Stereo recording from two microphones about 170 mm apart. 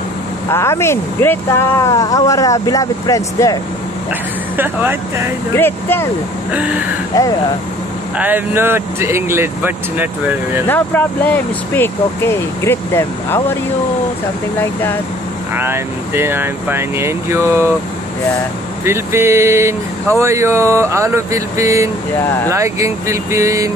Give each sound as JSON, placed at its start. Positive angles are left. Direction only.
{"t": 0.5, "sound": "speech", "side_deg": 15}
{"t": 4.6, "sound": "speech", "side_deg": -10}
{"t": 5.6, "sound": "speech", "side_deg": 10}
{"t": 6.5, "sound": "speech", "side_deg": -10}
{"t": 7.1, "sound": "speech", "side_deg": 20}
{"t": 8.2, "sound": "speech", "side_deg": -10}
{"t": 10.7, "sound": "speech", "side_deg": 10}
{"t": 14.6, "sound": "speech", "side_deg": 15}
{"t": 15.5, "sound": "speech", "side_deg": -15}
{"t": 18.9, "sound": "speech", "side_deg": -15}